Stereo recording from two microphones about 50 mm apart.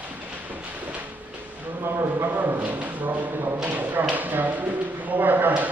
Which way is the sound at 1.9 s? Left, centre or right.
Right.